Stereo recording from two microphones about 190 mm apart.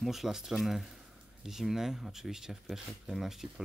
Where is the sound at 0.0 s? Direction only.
Centre (ahead or behind).